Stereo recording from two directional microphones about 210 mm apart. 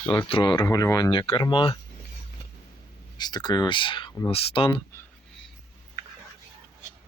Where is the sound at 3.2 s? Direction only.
20° left (ahead or behind).